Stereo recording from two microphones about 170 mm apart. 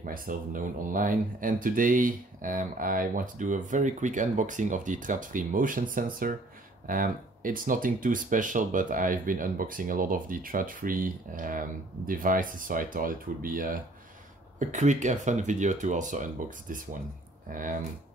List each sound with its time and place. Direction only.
0.0 s speech: 55° right (ahead or behind)